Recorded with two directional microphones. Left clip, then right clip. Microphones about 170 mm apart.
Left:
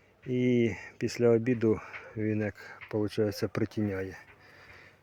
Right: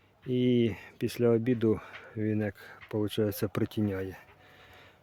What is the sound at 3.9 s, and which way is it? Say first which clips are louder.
Speech: even; 25° right (ahead or behind).